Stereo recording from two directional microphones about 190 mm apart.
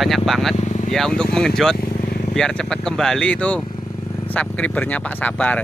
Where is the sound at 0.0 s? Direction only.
Centre (ahead or behind).